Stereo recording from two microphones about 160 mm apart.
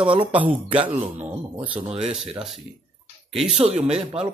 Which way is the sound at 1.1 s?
10° right (ahead or behind).